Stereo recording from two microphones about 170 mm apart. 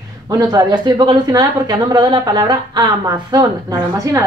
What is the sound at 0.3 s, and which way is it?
A woman's voice, 20° right (ahead or behind).